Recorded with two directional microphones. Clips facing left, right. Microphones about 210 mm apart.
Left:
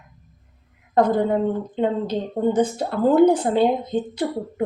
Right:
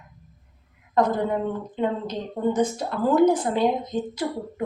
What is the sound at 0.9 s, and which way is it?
A woman's voice, 30° left (ahead or behind).